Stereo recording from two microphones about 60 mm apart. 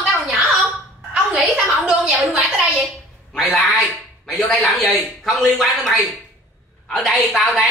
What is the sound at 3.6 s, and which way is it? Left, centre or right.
Speech, centre.